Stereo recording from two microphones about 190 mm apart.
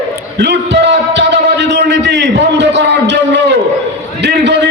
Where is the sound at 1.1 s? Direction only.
65° right (ahead or behind).